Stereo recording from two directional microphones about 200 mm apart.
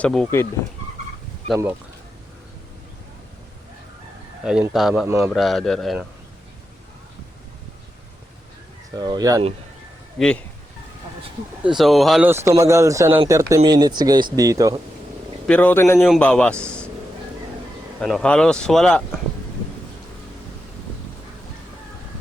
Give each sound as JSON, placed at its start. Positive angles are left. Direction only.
{"t": 0.0, "sound": "a man's voice", "side_deg": 5}
{"t": 4.7, "sound": "speech", "side_deg": 0}
{"t": 9.0, "sound": "speech", "side_deg": -20}
{"t": 10.2, "sound": "speech", "side_deg": 5}
{"t": 11.6, "sound": "speech", "side_deg": 0}
{"t": 12.3, "sound": "speech", "side_deg": -15}
{"t": 15.4, "sound": "a man's voice", "side_deg": 5}
{"t": 16.0, "sound": "speech", "side_deg": 0}
{"t": 18.0, "sound": "speech", "side_deg": 5}